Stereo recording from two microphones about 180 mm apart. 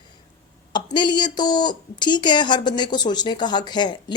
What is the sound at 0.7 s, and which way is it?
A woman's voice, 25° left (ahead or behind).